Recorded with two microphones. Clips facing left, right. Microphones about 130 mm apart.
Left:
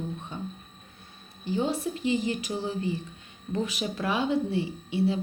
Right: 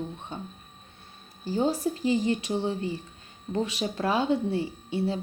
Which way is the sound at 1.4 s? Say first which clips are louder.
Right 2 dB; 35° right (ahead or behind).